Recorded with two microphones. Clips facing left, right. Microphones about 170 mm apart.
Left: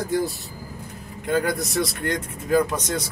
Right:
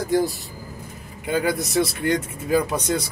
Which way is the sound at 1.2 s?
5° right (ahead or behind).